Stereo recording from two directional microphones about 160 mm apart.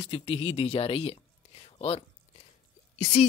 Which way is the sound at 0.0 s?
40° left (ahead or behind).